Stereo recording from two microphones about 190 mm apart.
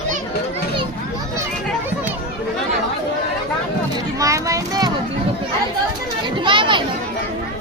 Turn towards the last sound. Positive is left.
turn(degrees=-25)  # may be behind; listen again after turning